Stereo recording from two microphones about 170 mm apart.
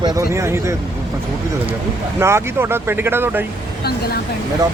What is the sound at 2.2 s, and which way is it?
Speech, 15° right (ahead or behind).